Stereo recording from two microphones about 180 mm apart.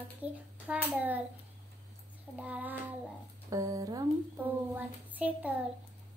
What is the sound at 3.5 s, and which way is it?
Child singing, 20° right (ahead or behind).